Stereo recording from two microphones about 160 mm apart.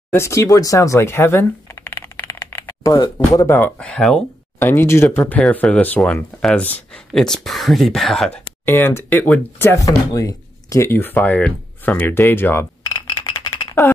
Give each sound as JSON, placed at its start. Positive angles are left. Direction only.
{"t": 0.1, "sound": "speech", "side_deg": 15}
{"t": 8.6, "sound": "speech", "side_deg": 15}
{"t": 13.1, "sound": "music", "side_deg": 30}